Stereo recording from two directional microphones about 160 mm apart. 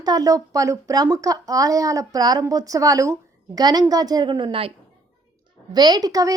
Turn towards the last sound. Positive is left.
turn(degrees=-20)  # may be behind; listen again after turning